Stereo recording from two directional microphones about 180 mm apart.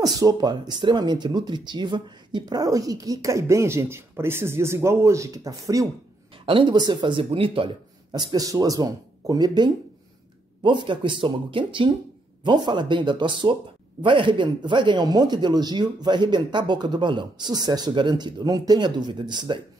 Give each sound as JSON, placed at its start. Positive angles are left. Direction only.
{"t": 0.0, "sound": "speech", "side_deg": -20}
{"t": 6.3, "sound": "speech", "side_deg": -30}